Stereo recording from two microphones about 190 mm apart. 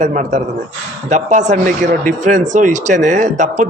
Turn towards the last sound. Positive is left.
turn(degrees=-40)  # may be behind; listen again after turning